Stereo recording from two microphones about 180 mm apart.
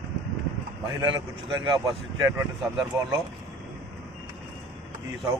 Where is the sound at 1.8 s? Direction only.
20° right (ahead or behind).